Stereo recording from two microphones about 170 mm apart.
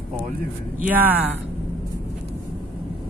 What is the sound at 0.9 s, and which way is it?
Speech, 10° right (ahead or behind).